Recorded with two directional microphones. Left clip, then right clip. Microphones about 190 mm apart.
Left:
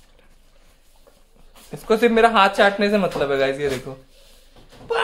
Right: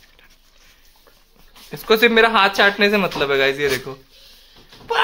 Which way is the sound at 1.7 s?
10° right (ahead or behind).